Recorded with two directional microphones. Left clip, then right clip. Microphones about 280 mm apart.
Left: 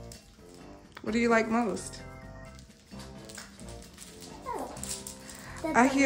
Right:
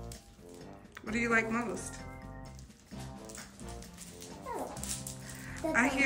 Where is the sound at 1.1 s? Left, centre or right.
Centre.